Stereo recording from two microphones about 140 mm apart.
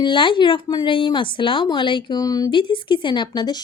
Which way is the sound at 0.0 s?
35° left (ahead or behind).